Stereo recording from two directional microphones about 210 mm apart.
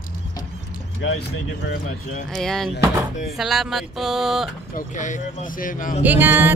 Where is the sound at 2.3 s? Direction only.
Centre (ahead or behind).